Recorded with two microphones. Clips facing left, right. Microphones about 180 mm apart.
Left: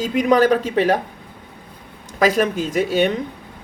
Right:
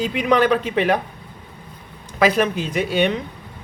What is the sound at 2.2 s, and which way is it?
Speech, 45° left (ahead or behind).